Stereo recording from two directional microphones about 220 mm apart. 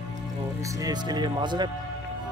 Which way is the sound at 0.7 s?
20° right (ahead or behind).